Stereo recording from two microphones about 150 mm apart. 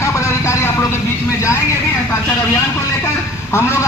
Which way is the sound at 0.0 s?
20° left (ahead or behind).